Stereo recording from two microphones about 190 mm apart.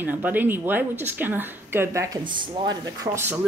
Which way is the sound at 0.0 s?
10° right (ahead or behind).